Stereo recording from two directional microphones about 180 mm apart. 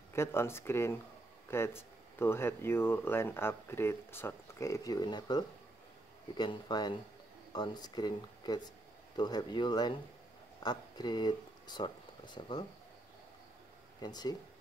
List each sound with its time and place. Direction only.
0.1 s speech: 15° left (ahead or behind)
14.0 s speech: 20° left (ahead or behind)